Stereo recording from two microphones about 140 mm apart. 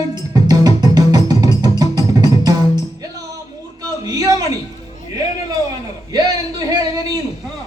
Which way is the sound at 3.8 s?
25° right (ahead or behind).